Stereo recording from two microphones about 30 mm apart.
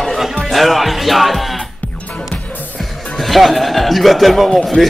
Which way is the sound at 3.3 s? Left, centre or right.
Centre.